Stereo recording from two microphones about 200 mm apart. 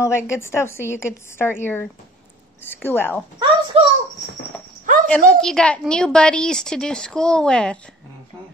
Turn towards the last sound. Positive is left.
turn(degrees=5)  # may be behind; listen again after turning